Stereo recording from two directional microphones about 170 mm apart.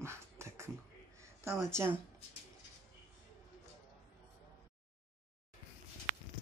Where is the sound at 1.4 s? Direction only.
15° right (ahead or behind).